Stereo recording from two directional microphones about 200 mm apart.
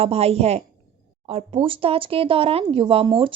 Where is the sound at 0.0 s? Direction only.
30° right (ahead or behind).